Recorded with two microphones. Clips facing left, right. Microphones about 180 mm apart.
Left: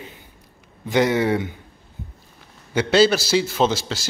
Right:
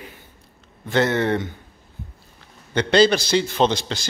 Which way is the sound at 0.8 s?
10° left (ahead or behind).